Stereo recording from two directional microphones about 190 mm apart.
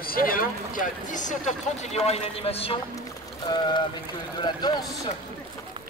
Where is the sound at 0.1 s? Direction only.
50° left (ahead or behind); by 5.1 s 20° left (ahead or behind).